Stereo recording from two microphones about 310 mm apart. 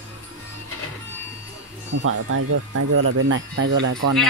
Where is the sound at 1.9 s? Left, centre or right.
Right.